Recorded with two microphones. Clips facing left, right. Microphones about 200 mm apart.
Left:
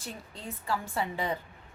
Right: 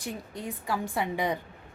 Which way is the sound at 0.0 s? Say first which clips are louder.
Right 6 dB; 15° right (ahead or behind).